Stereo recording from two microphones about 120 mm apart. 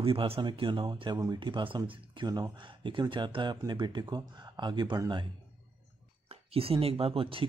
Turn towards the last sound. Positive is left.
turn(degrees=-50)  # may be behind; listen again after turning